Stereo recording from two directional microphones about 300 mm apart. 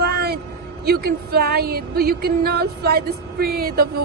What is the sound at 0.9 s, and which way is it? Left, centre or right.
Speech, right.